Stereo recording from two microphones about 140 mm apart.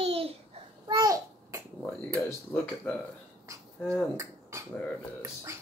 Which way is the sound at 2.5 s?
15° left (ahead or behind).